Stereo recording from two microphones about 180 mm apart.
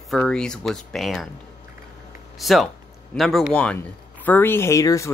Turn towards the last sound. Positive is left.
turn(degrees=15)  # may be behind; listen again after turning